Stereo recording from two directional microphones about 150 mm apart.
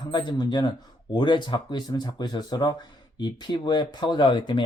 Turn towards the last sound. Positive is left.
turn(degrees=30)  # may be behind; listen again after turning